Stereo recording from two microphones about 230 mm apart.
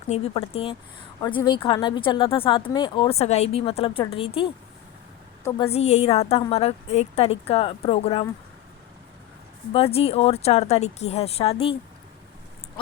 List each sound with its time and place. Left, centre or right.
0.1 s speech: left
5.4 s a woman's voice: centre
5.7 s speech: left
9.7 s speech: left